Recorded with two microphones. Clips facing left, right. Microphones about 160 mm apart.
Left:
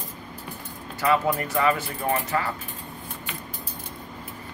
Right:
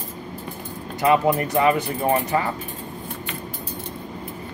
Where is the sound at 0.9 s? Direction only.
20° right (ahead or behind).